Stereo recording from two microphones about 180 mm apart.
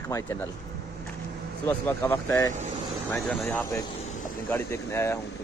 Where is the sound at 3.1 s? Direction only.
5° left (ahead or behind).